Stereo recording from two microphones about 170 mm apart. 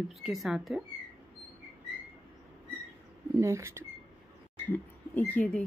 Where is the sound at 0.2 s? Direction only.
Centre (ahead or behind).